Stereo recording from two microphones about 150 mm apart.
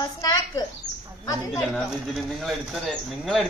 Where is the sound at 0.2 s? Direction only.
25° left (ahead or behind).